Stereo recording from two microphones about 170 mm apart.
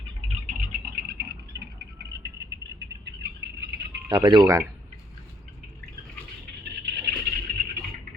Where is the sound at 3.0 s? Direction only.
85° right.